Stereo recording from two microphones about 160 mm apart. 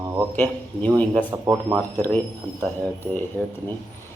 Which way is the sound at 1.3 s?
15° right (ahead or behind).